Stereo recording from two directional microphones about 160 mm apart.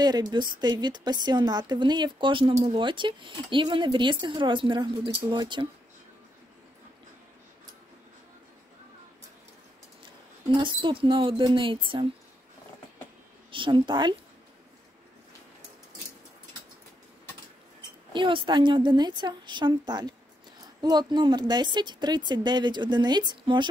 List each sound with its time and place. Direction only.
0.0 s speech: 25° right (ahead or behind)
10.6 s speech: 30° right (ahead or behind)
13.5 s speech: 30° right (ahead or behind)
18.1 s speech: 30° right (ahead or behind)